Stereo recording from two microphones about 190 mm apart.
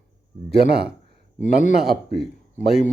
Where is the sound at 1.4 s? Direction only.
40° left (ahead or behind).